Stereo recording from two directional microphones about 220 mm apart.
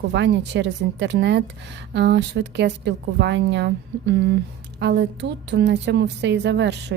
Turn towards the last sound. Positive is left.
turn(degrees=-50)  # may be behind; listen again after turning